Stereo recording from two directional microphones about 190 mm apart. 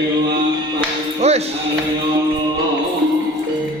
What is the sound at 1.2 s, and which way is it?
Music, 35° right (ahead or behind).